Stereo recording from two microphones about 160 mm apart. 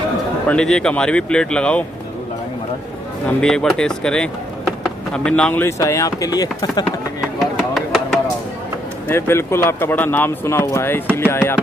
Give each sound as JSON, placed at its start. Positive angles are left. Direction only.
{"t": 0.5, "sound": "speech", "side_deg": 5}
{"t": 3.3, "sound": "speech", "side_deg": 5}
{"t": 7.3, "sound": "a sound", "side_deg": 0}
{"t": 9.1, "sound": "speech", "side_deg": 15}